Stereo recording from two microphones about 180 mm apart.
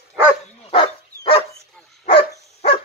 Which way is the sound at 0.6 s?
30° left (ahead or behind).